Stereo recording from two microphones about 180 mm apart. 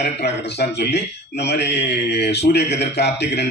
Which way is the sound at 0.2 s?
65° left (ahead or behind).